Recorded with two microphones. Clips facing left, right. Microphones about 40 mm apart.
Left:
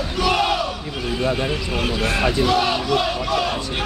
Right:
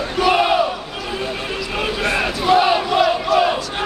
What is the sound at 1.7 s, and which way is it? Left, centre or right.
Basketball bounce, centre.